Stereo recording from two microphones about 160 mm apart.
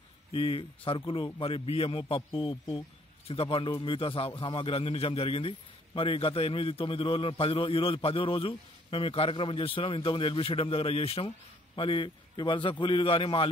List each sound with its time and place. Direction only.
0.3 s a man's voice: 35° left (ahead or behind)